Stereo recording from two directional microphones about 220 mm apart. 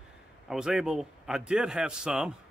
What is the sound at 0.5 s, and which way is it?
Speech, centre (ahead or behind).